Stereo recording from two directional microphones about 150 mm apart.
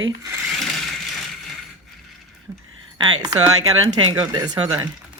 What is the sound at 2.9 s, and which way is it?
Speech, 25° right (ahead or behind).